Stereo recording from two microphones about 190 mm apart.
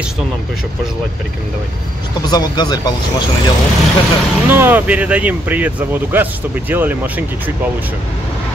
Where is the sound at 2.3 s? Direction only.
20° left (ahead or behind).